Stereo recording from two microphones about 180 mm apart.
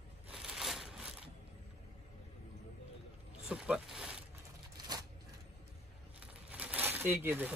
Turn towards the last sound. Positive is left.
turn(degrees=-10)  # may be behind; listen again after turning